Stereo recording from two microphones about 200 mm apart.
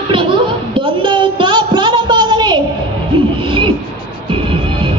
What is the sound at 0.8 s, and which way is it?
Music, 25° right (ahead or behind).